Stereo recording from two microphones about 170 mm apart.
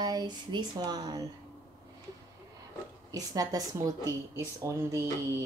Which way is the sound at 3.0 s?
20° right (ahead or behind).